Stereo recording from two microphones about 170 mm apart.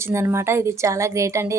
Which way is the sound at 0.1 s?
15° right (ahead or behind).